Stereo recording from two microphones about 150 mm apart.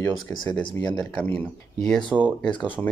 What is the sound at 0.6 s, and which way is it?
Speech, 30° left (ahead or behind).